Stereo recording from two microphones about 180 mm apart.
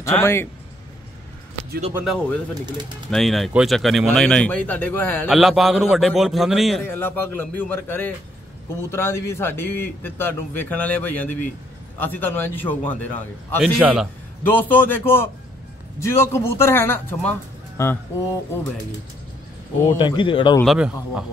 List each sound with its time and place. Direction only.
0.0 s speech: 15° left (ahead or behind)
2.1 s speech: 10° left (ahead or behind)
5.3 s speech: centre (ahead or behind)
6.8 s speech: 10° left (ahead or behind)
13.6 s speech: 5° right (ahead or behind)
14.4 s speech: 10° left (ahead or behind)
20.0 s speech: 25° left (ahead or behind)
20.6 s speech: 5° right (ahead or behind)